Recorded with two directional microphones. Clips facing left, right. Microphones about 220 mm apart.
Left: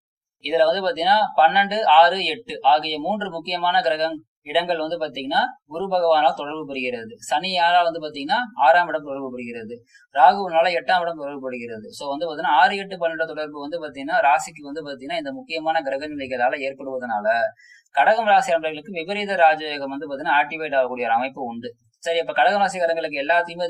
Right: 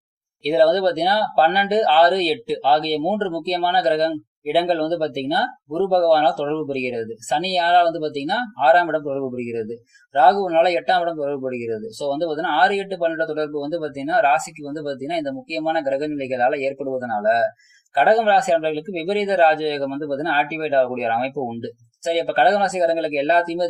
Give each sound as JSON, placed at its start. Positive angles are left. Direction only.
{"t": 0.4, "sound": "speech", "side_deg": -35}